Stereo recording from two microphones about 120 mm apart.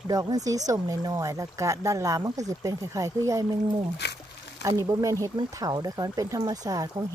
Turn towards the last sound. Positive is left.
turn(degrees=-30)  # may be behind; listen again after turning